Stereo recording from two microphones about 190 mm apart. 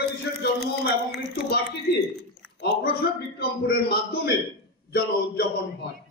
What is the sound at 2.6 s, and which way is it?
A man's voice, 55° left (ahead or behind).